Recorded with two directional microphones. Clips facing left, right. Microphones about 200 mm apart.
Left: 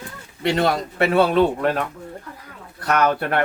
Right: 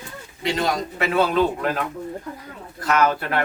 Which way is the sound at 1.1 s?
30° left (ahead or behind).